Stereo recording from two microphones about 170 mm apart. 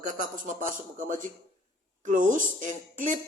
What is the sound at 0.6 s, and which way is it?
Speech, 50° right (ahead or behind).